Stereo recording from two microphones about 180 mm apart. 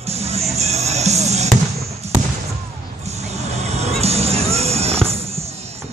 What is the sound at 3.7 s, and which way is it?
Music, 35° right (ahead or behind).